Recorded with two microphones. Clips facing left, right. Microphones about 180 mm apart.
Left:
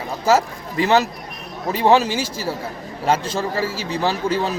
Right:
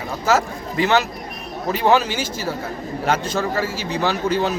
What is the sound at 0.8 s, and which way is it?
A man's voice, 35° left (ahead or behind).